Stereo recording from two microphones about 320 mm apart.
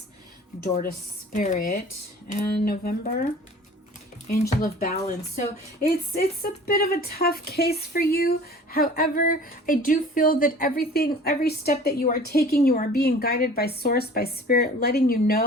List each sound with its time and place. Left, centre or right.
0.6 s speech: left